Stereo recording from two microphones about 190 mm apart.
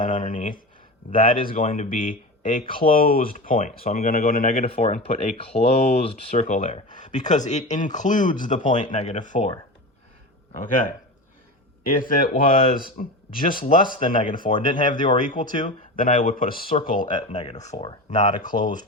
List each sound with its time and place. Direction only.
0.0 s a sound: 40° left (ahead or behind)
1.1 s speech: 45° left (ahead or behind)
4.6 s speech: 35° left (ahead or behind)
6.9 s speech: 40° left (ahead or behind)
10.5 s speech: 40° left (ahead or behind)
11.9 s speech: 50° left (ahead or behind)